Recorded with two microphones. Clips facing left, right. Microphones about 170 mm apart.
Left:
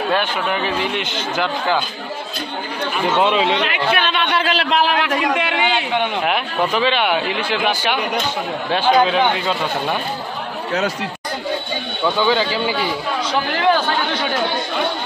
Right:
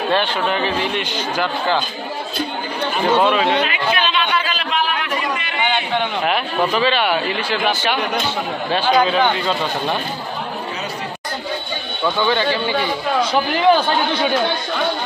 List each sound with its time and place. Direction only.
0.1 s speech: 10° left (ahead or behind)
3.2 s a man's voice: 20° left (ahead or behind)
3.7 s a sound: 55° left (ahead or behind); by 5.9 s 90° left
5.9 s speech: 5° left (ahead or behind)
12.2 s speech: 5° left (ahead or behind)